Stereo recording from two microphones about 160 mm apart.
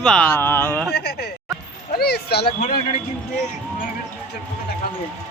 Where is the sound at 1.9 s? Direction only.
85° left.